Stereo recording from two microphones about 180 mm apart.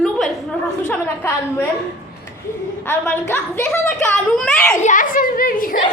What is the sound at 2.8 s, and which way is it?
A child's voice, 10° left (ahead or behind).